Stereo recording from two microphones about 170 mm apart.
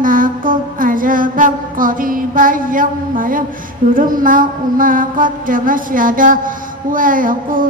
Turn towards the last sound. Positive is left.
turn(degrees=-55)  # may be behind; listen again after turning